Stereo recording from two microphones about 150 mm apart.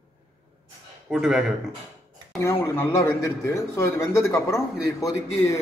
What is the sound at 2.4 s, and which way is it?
A man's voice, 15° left (ahead or behind).